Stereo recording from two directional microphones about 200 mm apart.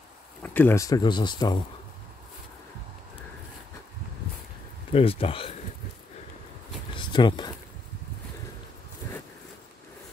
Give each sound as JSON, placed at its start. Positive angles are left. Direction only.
{"t": 0.4, "sound": "speech", "side_deg": 10}
{"t": 4.9, "sound": "speech", "side_deg": 25}
{"t": 6.9, "sound": "a sound", "side_deg": 25}